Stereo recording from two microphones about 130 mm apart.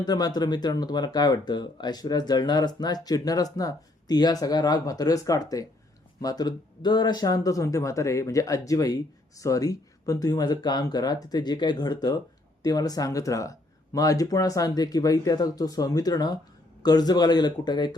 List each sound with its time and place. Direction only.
0.0 s speech: 30° left (ahead or behind)